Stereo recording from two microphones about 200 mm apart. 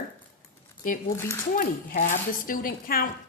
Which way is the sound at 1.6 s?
40° left (ahead or behind).